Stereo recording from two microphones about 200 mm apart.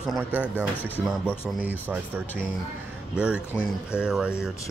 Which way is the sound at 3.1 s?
5° right (ahead or behind).